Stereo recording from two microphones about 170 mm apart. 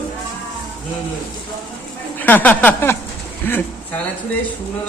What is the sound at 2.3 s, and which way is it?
Speech, 10° left (ahead or behind).